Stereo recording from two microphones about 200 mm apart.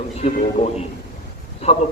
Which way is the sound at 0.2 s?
40° left (ahead or behind).